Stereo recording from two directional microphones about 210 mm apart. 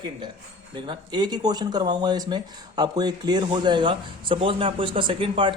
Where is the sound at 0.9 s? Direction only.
20° right (ahead or behind).